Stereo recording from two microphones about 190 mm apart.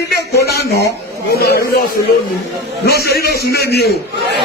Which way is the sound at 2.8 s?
55° left (ahead or behind).